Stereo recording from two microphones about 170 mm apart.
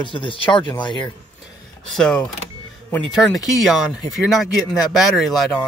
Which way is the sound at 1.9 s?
5° left (ahead or behind).